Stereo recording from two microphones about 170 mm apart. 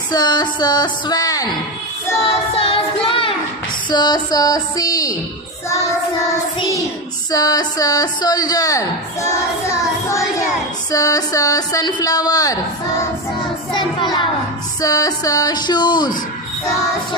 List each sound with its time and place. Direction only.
0.1 s speech: 25° left (ahead or behind)
2.6 s music: 35° left (ahead or behind)
3.8 s speech: 25° left (ahead or behind)
6.6 s speech: 20° left (ahead or behind)
10.9 s speech: 20° left (ahead or behind)
13.7 s speech: 25° left (ahead or behind)